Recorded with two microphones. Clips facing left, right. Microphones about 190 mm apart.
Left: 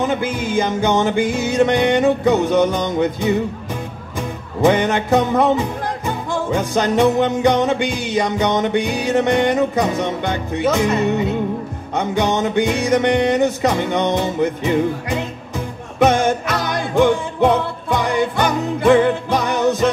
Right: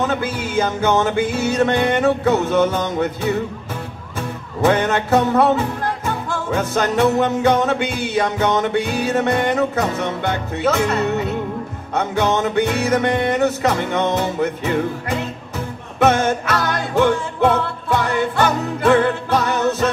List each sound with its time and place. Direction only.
0.0 s music: 15° left (ahead or behind)
4.6 s music: 15° left (ahead or behind)